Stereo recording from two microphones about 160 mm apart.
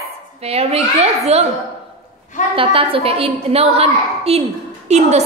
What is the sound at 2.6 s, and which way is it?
A woman's voice, 35° right (ahead or behind).